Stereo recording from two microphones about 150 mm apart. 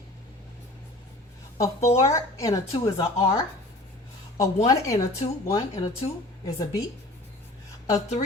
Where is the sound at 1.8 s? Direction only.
45° left (ahead or behind).